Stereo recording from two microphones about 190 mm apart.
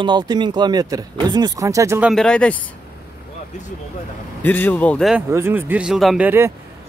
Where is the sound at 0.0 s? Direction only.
25° right (ahead or behind).